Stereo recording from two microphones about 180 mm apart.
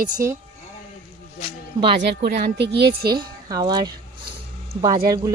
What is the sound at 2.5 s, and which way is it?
Speech, 65° right (ahead or behind).